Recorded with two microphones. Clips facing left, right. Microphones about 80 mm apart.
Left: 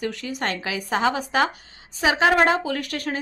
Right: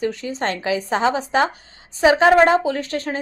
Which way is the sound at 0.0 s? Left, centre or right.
Right.